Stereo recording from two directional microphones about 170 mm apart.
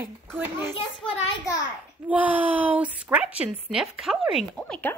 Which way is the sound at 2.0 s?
10° right (ahead or behind).